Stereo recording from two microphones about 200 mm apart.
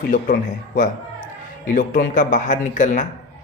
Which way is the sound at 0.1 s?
45° left (ahead or behind).